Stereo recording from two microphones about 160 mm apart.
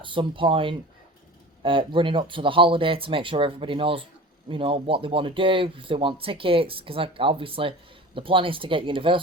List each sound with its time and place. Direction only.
0.0 s speech: 30° right (ahead or behind)